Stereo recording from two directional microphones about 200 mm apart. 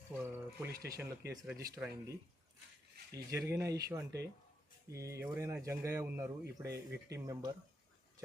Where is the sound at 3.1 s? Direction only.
15° right (ahead or behind).